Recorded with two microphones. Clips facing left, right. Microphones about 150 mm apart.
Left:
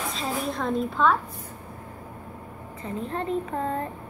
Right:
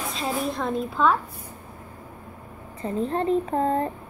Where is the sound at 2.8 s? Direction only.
35° right (ahead or behind).